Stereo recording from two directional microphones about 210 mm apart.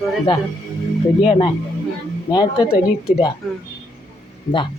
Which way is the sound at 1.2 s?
30° left (ahead or behind).